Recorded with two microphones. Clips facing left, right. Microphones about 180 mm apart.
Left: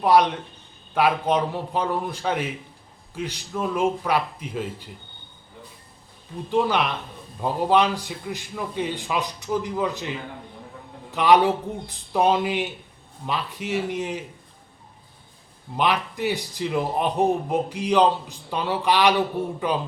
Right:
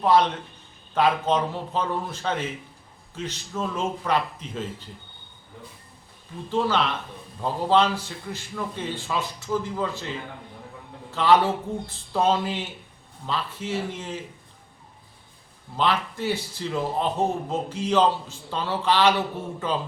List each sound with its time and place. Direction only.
0.0 s a man's voice: 10° left (ahead or behind)
6.5 s a man's voice: 15° left (ahead or behind)
15.7 s a man's voice: 15° left (ahead or behind)